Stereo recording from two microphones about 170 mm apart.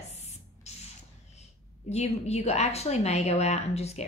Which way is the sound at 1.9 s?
40° left (ahead or behind).